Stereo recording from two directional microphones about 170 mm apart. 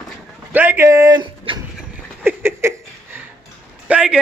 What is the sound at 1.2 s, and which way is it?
Speech, 30° right (ahead or behind).